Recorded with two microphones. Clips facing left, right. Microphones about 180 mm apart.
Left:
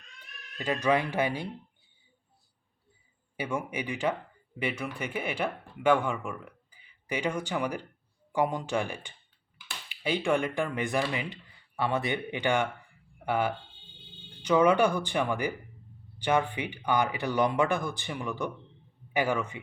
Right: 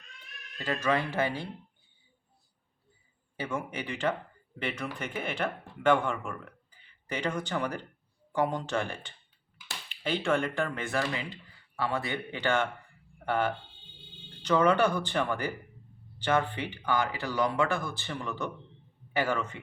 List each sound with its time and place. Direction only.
0.6 s speech: 15° left (ahead or behind)
3.3 s a man's voice: 10° left (ahead or behind)